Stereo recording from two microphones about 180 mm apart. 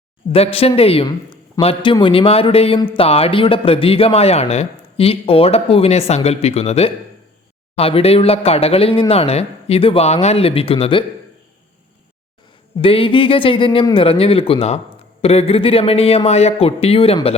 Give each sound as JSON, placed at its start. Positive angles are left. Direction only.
{"t": 0.3, "sound": "a man's voice", "side_deg": 35}
{"t": 12.8, "sound": "a man's voice", "side_deg": 30}